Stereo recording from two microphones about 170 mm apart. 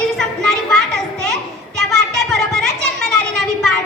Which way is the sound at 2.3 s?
Centre (ahead or behind).